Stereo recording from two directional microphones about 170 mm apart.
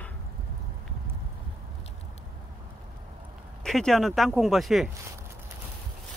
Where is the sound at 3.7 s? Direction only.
5° left (ahead or behind).